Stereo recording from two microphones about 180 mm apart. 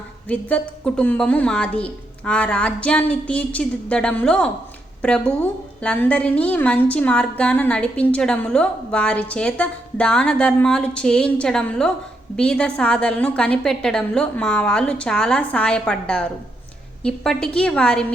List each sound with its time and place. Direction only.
0.3 s a woman's voice: 5° left (ahead or behind)